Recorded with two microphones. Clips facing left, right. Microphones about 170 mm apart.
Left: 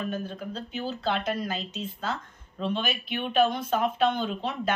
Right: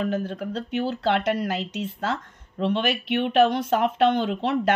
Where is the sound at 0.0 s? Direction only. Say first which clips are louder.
Right 6 dB; 85° right.